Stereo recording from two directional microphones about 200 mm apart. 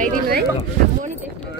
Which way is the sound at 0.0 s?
45° right (ahead or behind).